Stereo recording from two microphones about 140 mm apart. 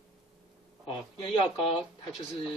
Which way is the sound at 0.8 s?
35° left (ahead or behind).